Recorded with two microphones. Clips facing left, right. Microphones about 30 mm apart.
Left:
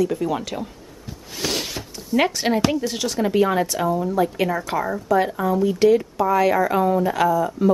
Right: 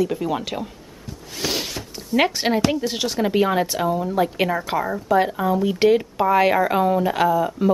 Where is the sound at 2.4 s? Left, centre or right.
Centre.